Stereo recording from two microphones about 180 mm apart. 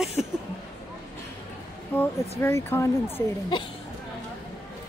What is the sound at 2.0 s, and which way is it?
Speech, 15° left (ahead or behind).